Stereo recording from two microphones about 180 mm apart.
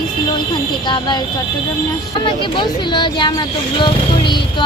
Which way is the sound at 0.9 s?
25° left (ahead or behind).